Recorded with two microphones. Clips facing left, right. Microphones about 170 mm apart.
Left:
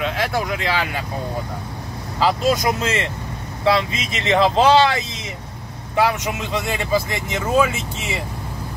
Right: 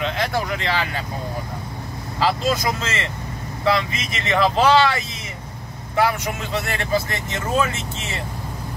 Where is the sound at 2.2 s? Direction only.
15° left (ahead or behind).